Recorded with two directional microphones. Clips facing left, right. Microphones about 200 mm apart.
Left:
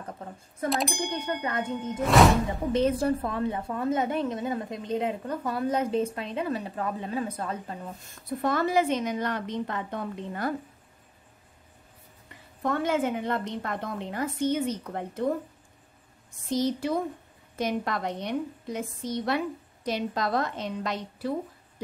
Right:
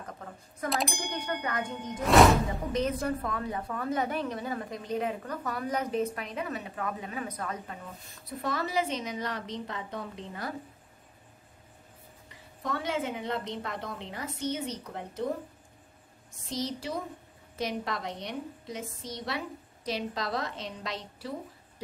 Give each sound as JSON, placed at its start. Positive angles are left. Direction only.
{"t": 0.7, "sound": "a sound", "side_deg": 0}
{"t": 2.7, "sound": "a woman's voice", "side_deg": 30}
{"t": 8.3, "sound": "a woman's voice", "side_deg": 55}
{"t": 12.6, "sound": "a woman's voice", "side_deg": 50}
{"t": 16.4, "sound": "a woman's voice", "side_deg": 55}